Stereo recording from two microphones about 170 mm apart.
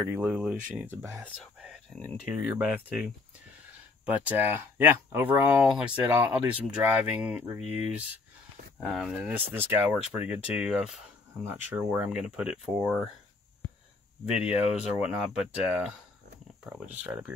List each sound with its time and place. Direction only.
0.0 s speech: 10° right (ahead or behind)
1.1 s speech: 5° left (ahead or behind)
7.6 s speech: 40° left (ahead or behind)
8.9 s speech: 5° right (ahead or behind)
14.3 s speech: 10° right (ahead or behind)